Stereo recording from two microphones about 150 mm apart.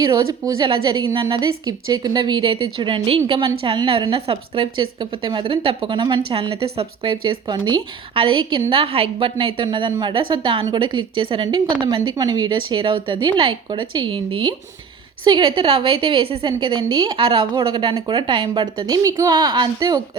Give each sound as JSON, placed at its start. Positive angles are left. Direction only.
{"t": 0.1, "sound": "speech", "side_deg": -25}
{"t": 0.7, "sound": "a woman's voice", "side_deg": -35}